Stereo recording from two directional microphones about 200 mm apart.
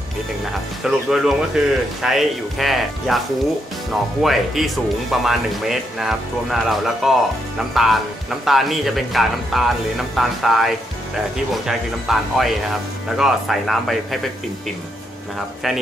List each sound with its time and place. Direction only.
0.8 s a man's voice: 5° right (ahead or behind)
4.2 s a man's voice: centre (ahead or behind)